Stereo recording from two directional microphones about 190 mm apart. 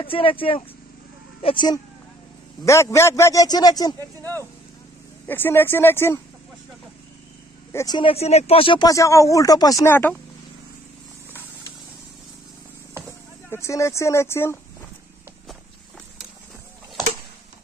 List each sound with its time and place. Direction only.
0.0 s a man's voice: 30° left (ahead or behind); by 6.2 s 10° left (ahead or behind)
7.7 s speech: 20° left (ahead or behind)
13.5 s a man's voice: 15° left (ahead or behind)